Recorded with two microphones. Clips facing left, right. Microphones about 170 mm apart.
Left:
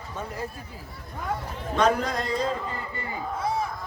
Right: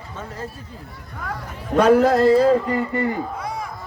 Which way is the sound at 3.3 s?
25° left (ahead or behind).